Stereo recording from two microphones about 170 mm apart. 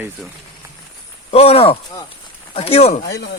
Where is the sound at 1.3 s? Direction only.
35° left (ahead or behind).